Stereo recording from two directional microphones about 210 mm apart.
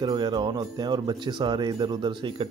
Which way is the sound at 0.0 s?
20° right (ahead or behind).